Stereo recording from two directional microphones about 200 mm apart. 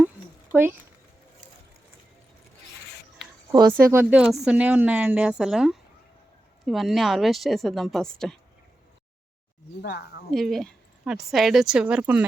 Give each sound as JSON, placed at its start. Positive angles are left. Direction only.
{"t": 0.5, "sound": "speech", "side_deg": -10}
{"t": 3.5, "sound": "a woman's voice", "side_deg": -15}
{"t": 9.8, "sound": "speech", "side_deg": 55}
{"t": 10.3, "sound": "a woman's voice", "side_deg": 0}